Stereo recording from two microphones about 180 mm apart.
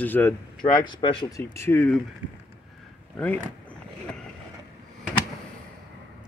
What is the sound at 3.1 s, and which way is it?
Speech, 10° left (ahead or behind).